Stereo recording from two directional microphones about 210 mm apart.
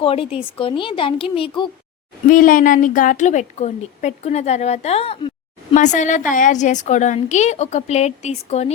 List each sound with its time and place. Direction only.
0.0 s speech: 25° left (ahead or behind)
2.3 s a woman's voice: 40° left (ahead or behind)